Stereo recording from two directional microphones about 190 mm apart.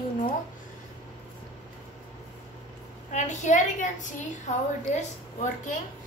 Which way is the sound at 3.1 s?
40° left (ahead or behind).